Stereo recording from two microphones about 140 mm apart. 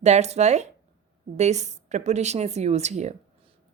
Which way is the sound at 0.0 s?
55° right (ahead or behind).